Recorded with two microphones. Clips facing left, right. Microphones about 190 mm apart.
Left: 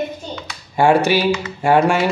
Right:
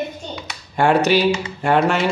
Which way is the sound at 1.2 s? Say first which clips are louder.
Even; 25° right (ahead or behind).